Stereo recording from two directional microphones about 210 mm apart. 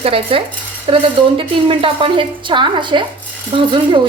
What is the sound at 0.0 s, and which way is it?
A woman's voice, 25° right (ahead or behind).